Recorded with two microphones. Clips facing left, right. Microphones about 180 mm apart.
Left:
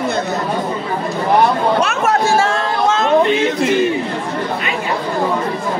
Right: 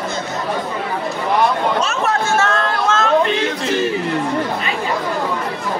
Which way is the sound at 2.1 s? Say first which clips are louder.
Left 5 dB; 35° left (ahead or behind).